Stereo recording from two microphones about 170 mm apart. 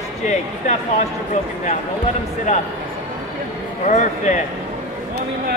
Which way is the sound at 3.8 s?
45° left (ahead or behind).